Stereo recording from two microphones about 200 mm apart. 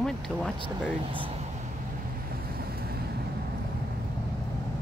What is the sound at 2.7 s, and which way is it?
Vehicle, 50° right (ahead or behind).